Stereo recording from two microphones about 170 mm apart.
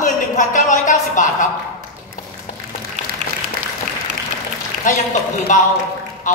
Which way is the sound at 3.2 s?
50° right (ahead or behind).